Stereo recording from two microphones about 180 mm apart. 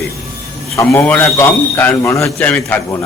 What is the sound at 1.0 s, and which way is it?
A man's voice, 10° left (ahead or behind).